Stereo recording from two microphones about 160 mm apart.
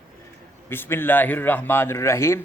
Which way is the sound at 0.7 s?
15° left (ahead or behind).